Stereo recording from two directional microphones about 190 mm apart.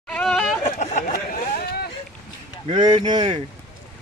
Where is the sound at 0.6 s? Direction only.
40° left (ahead or behind).